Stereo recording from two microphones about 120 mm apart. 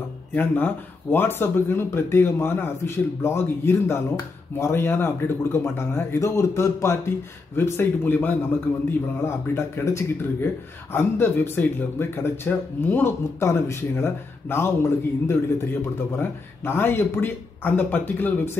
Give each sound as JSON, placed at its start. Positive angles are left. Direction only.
{"t": 0.3, "sound": "speech", "side_deg": 15}